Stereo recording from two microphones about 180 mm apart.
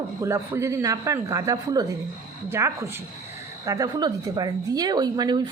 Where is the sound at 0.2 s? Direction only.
15° right (ahead or behind).